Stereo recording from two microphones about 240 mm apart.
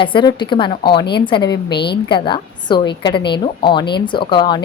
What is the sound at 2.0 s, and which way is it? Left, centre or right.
A woman's voice, centre.